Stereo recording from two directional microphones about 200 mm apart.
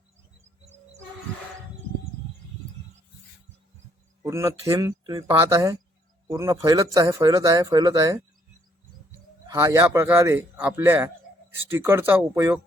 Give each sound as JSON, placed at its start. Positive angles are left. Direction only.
{"t": 4.2, "sound": "speech", "side_deg": -15}
{"t": 9.5, "sound": "speech", "side_deg": -15}